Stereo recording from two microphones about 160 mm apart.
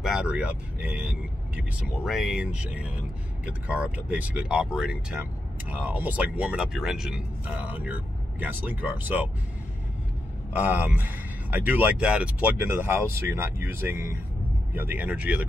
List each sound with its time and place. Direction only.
0.0 s speech: 5° right (ahead or behind)
10.5 s speech: 10° right (ahead or behind)